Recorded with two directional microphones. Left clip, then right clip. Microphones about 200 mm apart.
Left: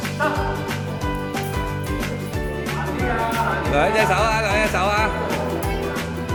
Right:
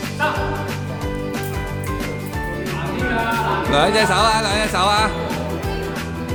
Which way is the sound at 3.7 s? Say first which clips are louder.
Right 2 dB; 20° right (ahead or behind).